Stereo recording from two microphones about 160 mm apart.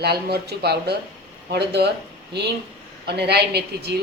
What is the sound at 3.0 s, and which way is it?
Speech, 90° right.